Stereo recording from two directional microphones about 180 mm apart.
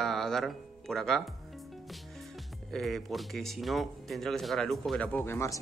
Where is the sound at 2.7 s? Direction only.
Centre (ahead or behind).